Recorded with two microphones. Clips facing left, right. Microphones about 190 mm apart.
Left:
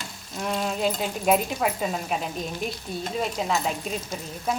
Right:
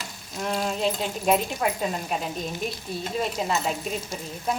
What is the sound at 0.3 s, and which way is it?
Speech, centre (ahead or behind).